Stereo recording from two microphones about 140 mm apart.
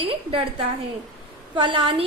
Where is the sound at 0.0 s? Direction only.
40° right (ahead or behind).